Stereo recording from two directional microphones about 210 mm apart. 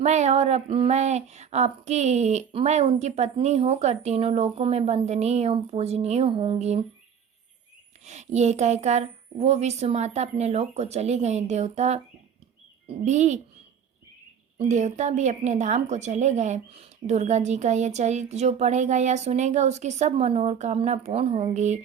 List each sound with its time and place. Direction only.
0.0 s a woman's voice: 30° right (ahead or behind)
8.0 s a woman's voice: 35° right (ahead or behind)
13.1 s a woman's voice: 35° right (ahead or behind)
14.6 s a woman's voice: 35° right (ahead or behind)